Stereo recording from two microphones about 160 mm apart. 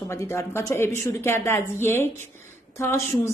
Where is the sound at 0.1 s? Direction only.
15° left (ahead or behind).